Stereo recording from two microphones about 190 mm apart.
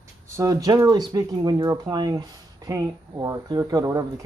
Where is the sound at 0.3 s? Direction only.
20° right (ahead or behind).